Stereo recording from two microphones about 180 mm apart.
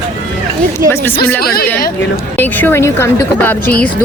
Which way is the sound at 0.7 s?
15° left (ahead or behind).